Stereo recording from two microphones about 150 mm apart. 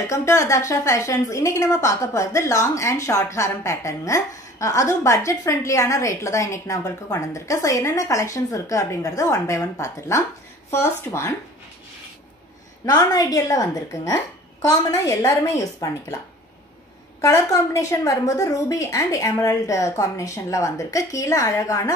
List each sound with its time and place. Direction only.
0.1 s a woman's voice: 20° left (ahead or behind)
12.8 s a woman's voice: 25° left (ahead or behind)
17.2 s a woman's voice: 20° left (ahead or behind)